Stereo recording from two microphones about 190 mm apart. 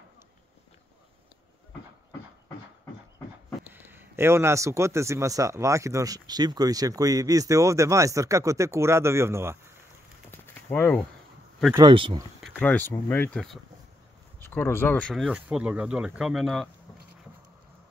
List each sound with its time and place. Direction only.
3.7 s a man's voice: 10° right (ahead or behind)
10.3 s a sound: 10° left (ahead or behind)
11.7 s speech: 25° right (ahead or behind)
12.4 s speech: 5° left (ahead or behind)
15.2 s speech: 5° right (ahead or behind)